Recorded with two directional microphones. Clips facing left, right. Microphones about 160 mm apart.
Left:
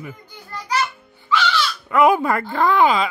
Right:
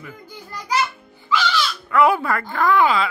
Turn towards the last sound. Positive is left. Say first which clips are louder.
# left 1 dB
turn(degrees=20)  # may be behind; listen again after turning